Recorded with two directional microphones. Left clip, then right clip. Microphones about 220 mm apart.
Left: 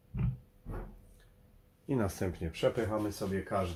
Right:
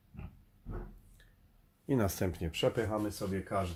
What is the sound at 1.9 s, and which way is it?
Speech, 35° right (ahead or behind).